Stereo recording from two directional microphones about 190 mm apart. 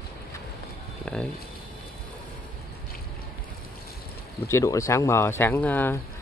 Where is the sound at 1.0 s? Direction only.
5° left (ahead or behind).